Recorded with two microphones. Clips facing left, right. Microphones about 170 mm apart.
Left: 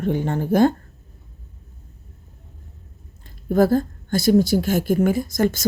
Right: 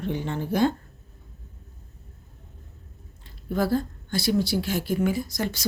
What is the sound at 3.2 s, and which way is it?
Speech, 45° left (ahead or behind).